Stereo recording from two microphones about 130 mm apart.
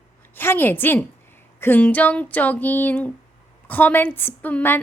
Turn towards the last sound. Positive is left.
turn(degrees=15)  # may be behind; listen again after turning